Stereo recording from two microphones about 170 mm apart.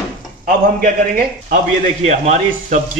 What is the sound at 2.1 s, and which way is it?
Speech, 45° right (ahead or behind).